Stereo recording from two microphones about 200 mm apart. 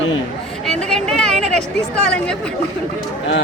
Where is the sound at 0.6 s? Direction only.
5° left (ahead or behind).